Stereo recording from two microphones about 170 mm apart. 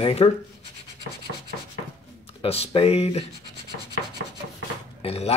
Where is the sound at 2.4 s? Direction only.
35° left (ahead or behind).